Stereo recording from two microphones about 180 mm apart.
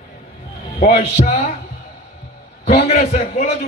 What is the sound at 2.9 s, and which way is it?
Speech, 40° left (ahead or behind).